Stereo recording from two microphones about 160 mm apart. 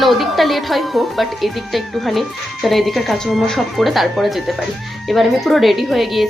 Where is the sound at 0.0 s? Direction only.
Centre (ahead or behind).